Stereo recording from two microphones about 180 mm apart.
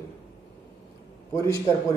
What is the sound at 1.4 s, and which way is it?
Speech, 20° left (ahead or behind).